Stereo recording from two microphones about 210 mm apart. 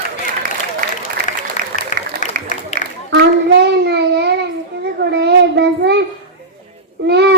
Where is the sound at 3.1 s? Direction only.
50° right (ahead or behind).